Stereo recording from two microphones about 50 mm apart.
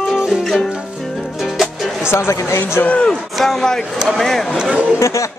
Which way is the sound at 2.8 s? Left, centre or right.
Left.